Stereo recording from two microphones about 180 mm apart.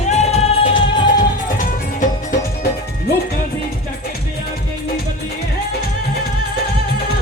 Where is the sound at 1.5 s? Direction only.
45° left (ahead or behind).